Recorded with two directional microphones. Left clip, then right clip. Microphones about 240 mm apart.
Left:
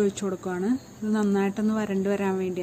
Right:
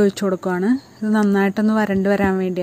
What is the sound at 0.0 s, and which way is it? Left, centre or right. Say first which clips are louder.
Speech: right 8 dB; right.